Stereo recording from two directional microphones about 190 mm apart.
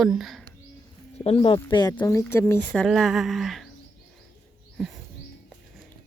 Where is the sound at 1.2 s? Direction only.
30° left (ahead or behind); by 3.7 s centre (ahead or behind).